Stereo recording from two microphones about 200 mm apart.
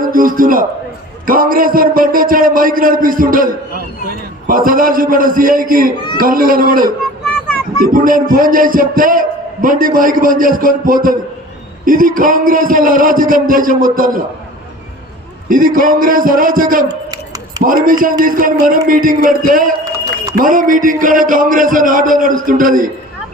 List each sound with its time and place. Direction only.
0.0 s a man's voice: 45° right (ahead or behind)
15.4 s a man's voice: 45° right (ahead or behind)
17.1 s a sound: 20° right (ahead or behind)
18.0 s a man's voice: 45° right (ahead or behind)